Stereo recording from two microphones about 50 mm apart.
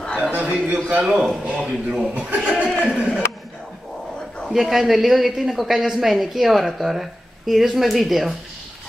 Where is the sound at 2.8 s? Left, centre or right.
Centre.